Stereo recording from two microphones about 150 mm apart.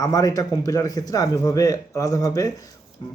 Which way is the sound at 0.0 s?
25° left (ahead or behind).